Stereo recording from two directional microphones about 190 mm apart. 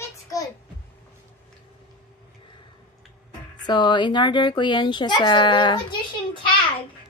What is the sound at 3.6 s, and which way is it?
Speech, 25° left (ahead or behind).